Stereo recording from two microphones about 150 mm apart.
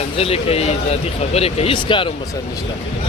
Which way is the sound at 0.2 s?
40° left (ahead or behind).